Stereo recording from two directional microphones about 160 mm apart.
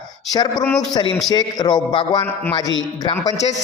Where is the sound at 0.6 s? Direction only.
5° left (ahead or behind).